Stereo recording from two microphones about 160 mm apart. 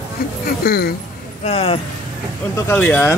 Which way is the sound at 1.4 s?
40° left (ahead or behind).